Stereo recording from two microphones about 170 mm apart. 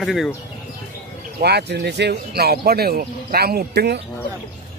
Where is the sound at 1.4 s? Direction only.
75° right (ahead or behind).